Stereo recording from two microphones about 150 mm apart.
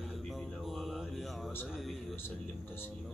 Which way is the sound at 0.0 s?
Centre (ahead or behind).